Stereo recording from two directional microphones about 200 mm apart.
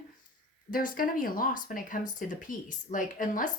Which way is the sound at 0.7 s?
45° left (ahead or behind).